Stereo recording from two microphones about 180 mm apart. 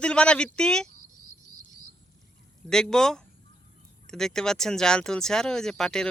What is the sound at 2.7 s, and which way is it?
Speech, 5° left (ahead or behind).